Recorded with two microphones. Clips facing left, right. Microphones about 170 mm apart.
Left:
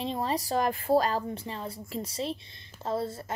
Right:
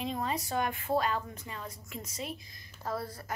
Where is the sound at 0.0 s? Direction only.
30° left (ahead or behind).